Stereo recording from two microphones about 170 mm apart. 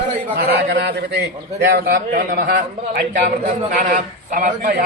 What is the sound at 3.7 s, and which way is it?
A man's voice, 55° right (ahead or behind).